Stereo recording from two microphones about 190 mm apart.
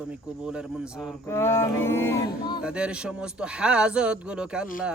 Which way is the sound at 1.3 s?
15° left (ahead or behind).